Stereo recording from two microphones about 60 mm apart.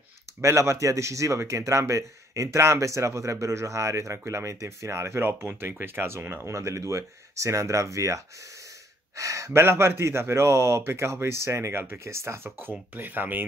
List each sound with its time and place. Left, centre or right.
0.4 s speech: right
5.2 s speech: right
6.4 s speech: right
9.5 s speech: right
12.4 s speech: right